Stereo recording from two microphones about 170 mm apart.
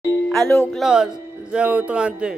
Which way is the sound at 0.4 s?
15° left (ahead or behind).